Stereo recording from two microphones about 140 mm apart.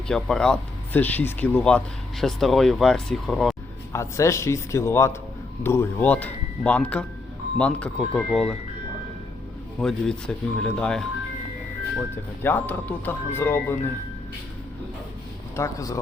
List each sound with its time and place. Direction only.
0.1 s speech: 5° left (ahead or behind)
3.9 s a man's voice: 20° left (ahead or behind); by 8.5 s 5° left (ahead or behind)
9.8 s speech: 5° left (ahead or behind)
12.4 s speech: 15° left (ahead or behind)
15.5 s a man's voice: 25° left (ahead or behind)